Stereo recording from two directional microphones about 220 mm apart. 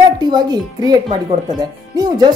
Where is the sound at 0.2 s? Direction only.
20° right (ahead or behind).